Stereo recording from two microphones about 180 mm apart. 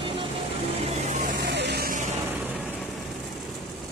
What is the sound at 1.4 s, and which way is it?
Vehicle, 70° right (ahead or behind).